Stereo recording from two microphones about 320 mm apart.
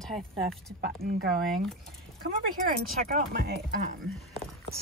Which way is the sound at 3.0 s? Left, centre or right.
Right.